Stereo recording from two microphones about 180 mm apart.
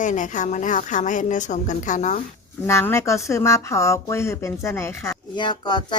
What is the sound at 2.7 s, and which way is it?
Speech, 15° left (ahead or behind).